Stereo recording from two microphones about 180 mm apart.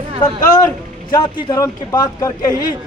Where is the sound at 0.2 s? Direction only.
20° left (ahead or behind).